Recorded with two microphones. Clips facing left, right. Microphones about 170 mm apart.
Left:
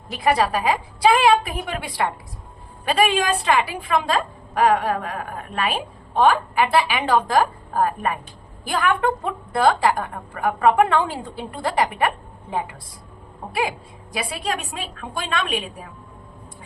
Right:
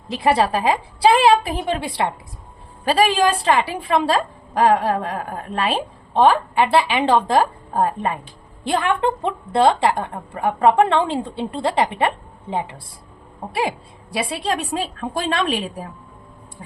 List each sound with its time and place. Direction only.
0.2 s a woman's voice: 30° right (ahead or behind)
2.8 s a woman's voice: 35° right (ahead or behind)